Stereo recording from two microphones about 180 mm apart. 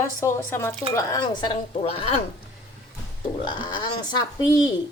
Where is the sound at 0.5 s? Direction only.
15° left (ahead or behind); by 2.1 s 35° left (ahead or behind).